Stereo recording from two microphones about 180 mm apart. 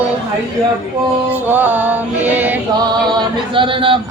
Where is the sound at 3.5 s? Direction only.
30° right (ahead or behind).